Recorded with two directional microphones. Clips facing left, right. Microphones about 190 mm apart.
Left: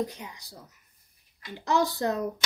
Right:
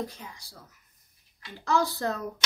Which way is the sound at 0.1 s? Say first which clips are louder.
Left 3 dB; 20° left (ahead or behind).